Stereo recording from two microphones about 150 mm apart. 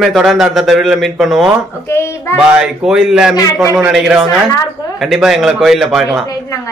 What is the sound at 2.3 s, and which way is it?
Speech, 5° right (ahead or behind).